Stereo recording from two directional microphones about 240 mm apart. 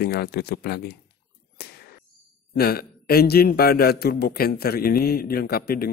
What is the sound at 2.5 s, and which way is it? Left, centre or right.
A man's voice, left.